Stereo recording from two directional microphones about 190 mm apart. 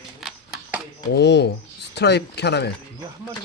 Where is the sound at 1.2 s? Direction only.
65° left (ahead or behind).